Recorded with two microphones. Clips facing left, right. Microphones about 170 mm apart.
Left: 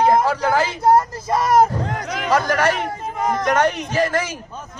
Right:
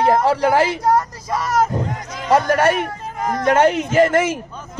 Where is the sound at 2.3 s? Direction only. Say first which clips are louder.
Right 3 dB; 25° right (ahead or behind).